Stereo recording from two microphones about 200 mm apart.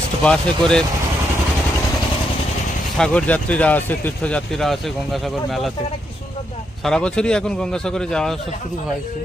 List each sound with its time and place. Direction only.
0.2 s speech: 5° left (ahead or behind)
3.0 s speech: 5° left (ahead or behind)
6.8 s speech: 5° left (ahead or behind)